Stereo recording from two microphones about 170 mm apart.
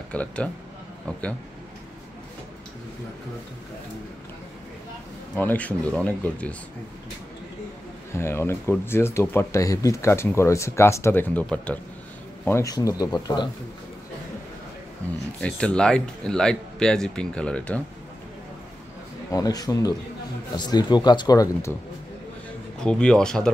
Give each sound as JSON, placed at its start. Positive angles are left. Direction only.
{"t": 0.1, "sound": "speech", "side_deg": 5}
{"t": 5.3, "sound": "speech", "side_deg": 10}
{"t": 8.1, "sound": "speech", "side_deg": 15}
{"t": 15.4, "sound": "speech", "side_deg": 5}
{"t": 19.3, "sound": "speech", "side_deg": 20}
{"t": 22.8, "sound": "speech", "side_deg": 5}